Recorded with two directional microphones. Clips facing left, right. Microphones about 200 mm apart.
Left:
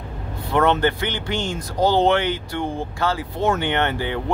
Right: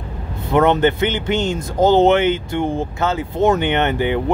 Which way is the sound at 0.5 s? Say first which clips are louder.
Right 4 dB; 20° right (ahead or behind).